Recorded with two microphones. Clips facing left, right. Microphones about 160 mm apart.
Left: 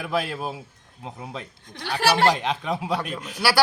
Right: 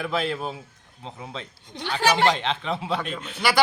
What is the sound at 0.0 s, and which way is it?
Speech, 5° left (ahead or behind).